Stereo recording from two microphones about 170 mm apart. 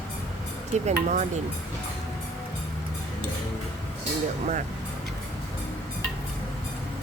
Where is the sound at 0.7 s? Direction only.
45° right (ahead or behind).